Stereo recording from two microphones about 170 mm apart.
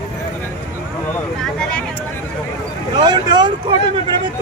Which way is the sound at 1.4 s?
5° left (ahead or behind).